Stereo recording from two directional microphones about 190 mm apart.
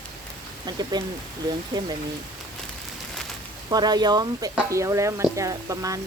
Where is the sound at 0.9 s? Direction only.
20° right (ahead or behind).